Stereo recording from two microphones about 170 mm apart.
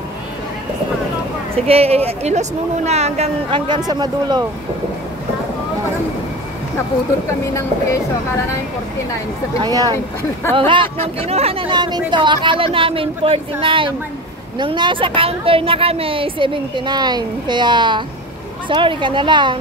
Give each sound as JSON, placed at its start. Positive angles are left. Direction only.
{"t": 1.7, "sound": "speech", "side_deg": -35}
{"t": 9.6, "sound": "a woman's voice", "side_deg": -20}